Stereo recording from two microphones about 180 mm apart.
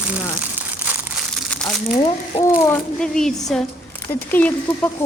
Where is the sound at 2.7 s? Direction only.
5° left (ahead or behind).